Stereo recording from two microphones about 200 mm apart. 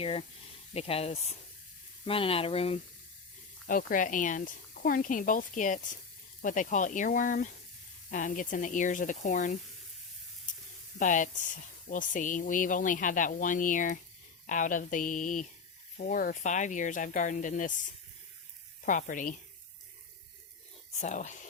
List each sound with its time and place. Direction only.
0.0 s speech: 30° left (ahead or behind)
3.7 s speech: 45° left (ahead or behind)
11.0 s speech: 40° left (ahead or behind)
18.9 s speech: 40° left (ahead or behind)
21.0 s speech: 35° left (ahead or behind)